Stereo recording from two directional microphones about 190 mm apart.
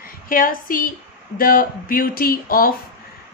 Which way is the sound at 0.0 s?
45° left (ahead or behind).